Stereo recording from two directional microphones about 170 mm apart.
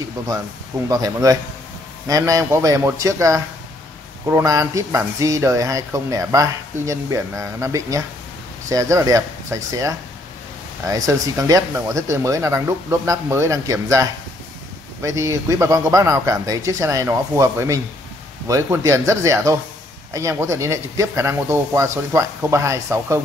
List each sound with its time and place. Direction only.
0.8 s speech: 20° right (ahead or behind)